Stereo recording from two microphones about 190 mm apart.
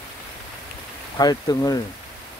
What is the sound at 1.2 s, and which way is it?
Speech, 20° left (ahead or behind).